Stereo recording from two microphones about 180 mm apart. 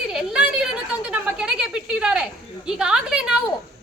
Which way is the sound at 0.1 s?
5° right (ahead or behind).